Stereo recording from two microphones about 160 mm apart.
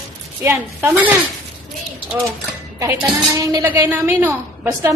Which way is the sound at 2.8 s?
20° right (ahead or behind).